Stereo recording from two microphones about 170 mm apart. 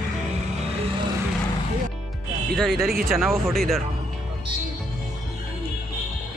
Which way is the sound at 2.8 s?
60° right (ahead or behind).